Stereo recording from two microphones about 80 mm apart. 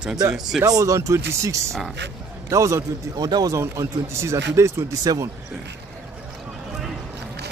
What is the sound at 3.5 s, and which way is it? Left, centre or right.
Speech, right.